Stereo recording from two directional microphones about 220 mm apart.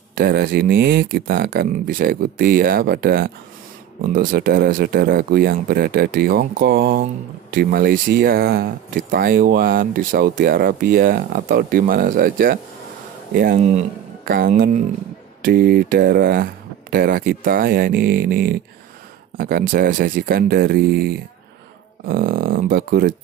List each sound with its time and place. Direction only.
0.1 s speech: 45° right (ahead or behind)